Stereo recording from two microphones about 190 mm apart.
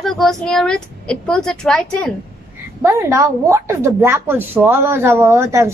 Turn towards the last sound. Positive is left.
turn(degrees=-15)  # may be behind; listen again after turning